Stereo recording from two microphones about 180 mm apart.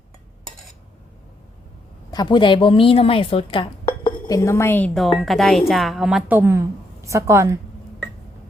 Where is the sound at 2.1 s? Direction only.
25° left (ahead or behind); by 7.6 s 15° right (ahead or behind).